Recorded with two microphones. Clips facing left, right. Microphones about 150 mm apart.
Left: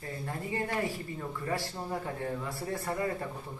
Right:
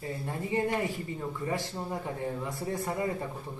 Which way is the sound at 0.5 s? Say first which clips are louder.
Right 4 dB; 20° right (ahead or behind).